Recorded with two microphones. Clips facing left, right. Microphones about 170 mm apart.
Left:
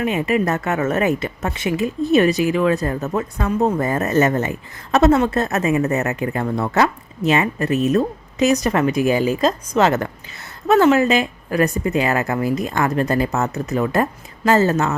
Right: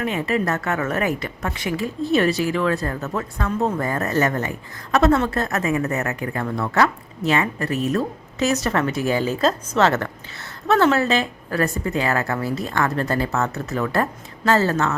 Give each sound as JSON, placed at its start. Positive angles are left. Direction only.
{"t": 0.0, "sound": "a woman's voice", "side_deg": 15}